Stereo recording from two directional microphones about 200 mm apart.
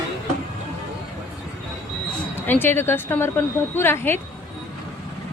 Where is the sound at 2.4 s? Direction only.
10° left (ahead or behind).